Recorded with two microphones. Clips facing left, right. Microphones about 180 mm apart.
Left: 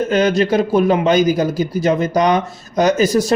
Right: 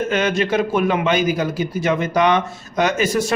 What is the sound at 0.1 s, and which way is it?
A man's voice, 35° left (ahead or behind).